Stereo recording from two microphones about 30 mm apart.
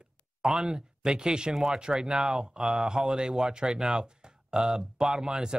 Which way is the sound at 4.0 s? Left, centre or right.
Right.